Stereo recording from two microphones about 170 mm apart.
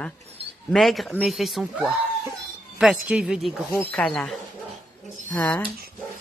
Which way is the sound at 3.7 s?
15° left (ahead or behind).